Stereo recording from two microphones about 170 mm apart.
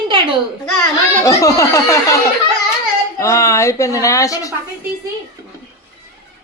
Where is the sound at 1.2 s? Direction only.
20° left (ahead or behind).